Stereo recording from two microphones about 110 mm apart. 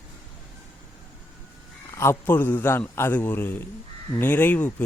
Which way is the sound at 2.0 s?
20° left (ahead or behind).